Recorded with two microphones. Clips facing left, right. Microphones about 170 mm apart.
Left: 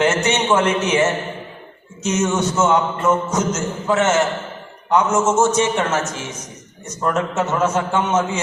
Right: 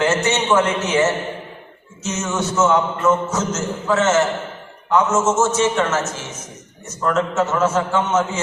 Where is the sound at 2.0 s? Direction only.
15° left (ahead or behind).